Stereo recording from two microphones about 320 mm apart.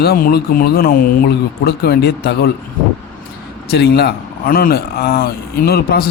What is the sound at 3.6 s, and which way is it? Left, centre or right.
Speech, left.